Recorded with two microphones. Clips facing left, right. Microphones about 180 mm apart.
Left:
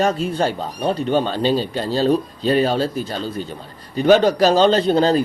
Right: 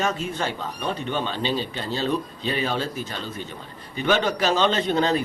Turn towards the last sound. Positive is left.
turn(degrees=35)  # may be behind; listen again after turning